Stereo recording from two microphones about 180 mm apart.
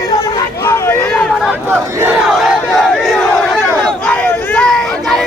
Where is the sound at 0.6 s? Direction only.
15° left (ahead or behind).